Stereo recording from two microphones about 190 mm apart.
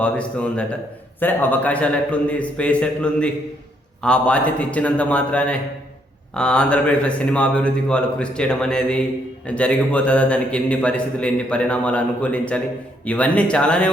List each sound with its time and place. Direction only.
0.0 s a man's voice: 5° left (ahead or behind)